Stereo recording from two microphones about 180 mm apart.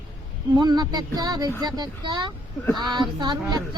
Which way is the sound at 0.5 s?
25° right (ahead or behind).